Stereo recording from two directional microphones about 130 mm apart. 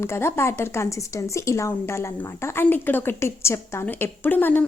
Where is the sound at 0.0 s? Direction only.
20° left (ahead or behind).